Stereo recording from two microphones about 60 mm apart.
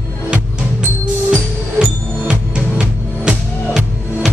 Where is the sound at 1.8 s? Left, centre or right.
Centre.